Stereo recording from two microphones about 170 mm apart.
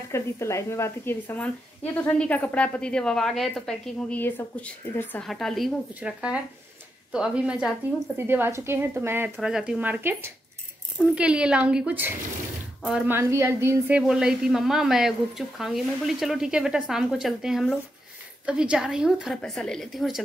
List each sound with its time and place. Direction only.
0.1 s a woman's voice: 15° left (ahead or behind); by 20.2 s centre (ahead or behind)